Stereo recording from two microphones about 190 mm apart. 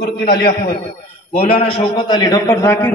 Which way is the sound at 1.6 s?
25° left (ahead or behind).